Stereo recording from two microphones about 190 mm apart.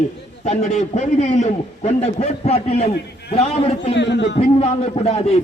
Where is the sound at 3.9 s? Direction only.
70° left (ahead or behind).